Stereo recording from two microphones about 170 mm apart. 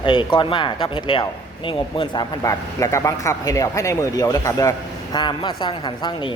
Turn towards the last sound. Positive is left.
turn(degrees=30)  # may be behind; listen again after turning